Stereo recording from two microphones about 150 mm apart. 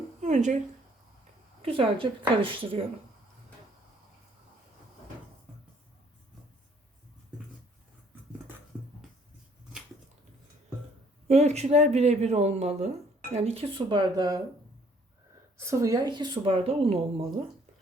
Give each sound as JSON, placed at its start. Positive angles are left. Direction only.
{"t": 0.2, "sound": "a sound", "side_deg": -50}
{"t": 1.6, "sound": "speech", "side_deg": -40}
{"t": 11.3, "sound": "speech", "side_deg": -45}
{"t": 15.5, "sound": "speech", "side_deg": -20}